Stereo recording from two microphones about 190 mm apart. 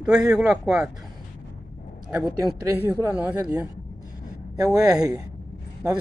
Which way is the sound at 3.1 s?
10° right (ahead or behind).